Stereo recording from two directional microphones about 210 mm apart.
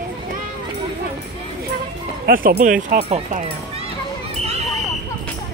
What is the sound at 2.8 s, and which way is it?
Speech, 30° right (ahead or behind).